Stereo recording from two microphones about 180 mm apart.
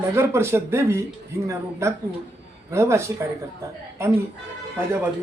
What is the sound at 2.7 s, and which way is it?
Speech, 15° right (ahead or behind).